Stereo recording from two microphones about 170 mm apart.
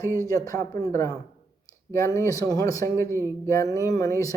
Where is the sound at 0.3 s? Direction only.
20° left (ahead or behind).